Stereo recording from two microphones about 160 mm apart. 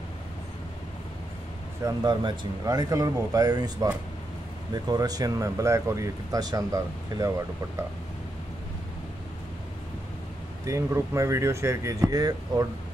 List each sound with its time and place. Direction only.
1.9 s speech: 25° right (ahead or behind)
10.6 s speech: 20° right (ahead or behind)